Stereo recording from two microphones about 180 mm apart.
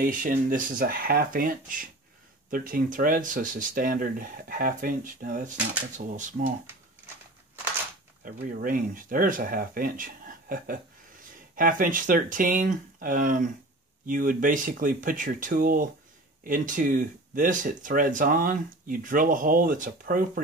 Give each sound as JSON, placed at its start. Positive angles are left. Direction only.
{"t": 0.0, "sound": "speech", "side_deg": -50}
{"t": 8.2, "sound": "speech", "side_deg": -50}